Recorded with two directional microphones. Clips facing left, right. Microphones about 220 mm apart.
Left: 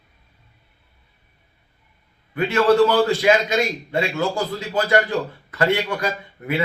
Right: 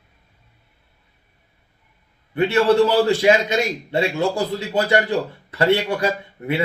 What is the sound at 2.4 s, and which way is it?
Speech, 25° right (ahead or behind).